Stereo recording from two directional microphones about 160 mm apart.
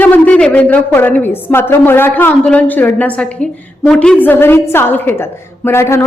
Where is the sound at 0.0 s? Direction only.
10° left (ahead or behind).